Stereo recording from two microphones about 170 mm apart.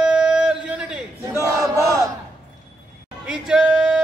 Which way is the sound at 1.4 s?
20° right (ahead or behind).